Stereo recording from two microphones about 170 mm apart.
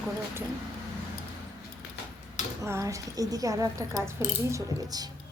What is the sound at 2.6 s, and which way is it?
A woman's voice, 20° right (ahead or behind).